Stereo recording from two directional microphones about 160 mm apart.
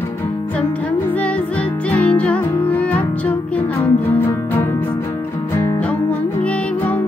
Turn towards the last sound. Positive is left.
turn(degrees=10)  # may be behind; listen again after turning